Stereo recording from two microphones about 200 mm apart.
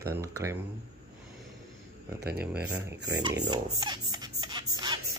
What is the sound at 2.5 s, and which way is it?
Speech, 5° right (ahead or behind).